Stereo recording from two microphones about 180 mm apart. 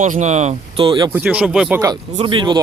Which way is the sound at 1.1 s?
10° right (ahead or behind).